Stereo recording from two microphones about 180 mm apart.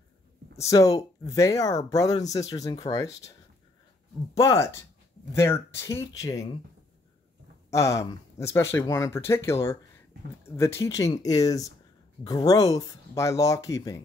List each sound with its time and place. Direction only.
0.6 s speech: 20° left (ahead or behind)
4.4 s speech: 15° left (ahead or behind)
7.7 s speech: 15° left (ahead or behind)